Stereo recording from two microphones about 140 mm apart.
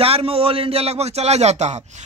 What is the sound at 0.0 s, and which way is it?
Speech, 45° right (ahead or behind).